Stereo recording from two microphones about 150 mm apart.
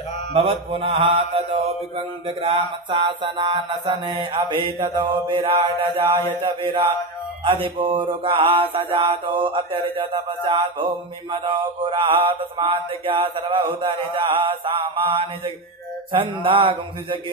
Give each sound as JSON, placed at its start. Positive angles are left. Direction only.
{"t": 0.3, "sound": "mantra", "side_deg": -40}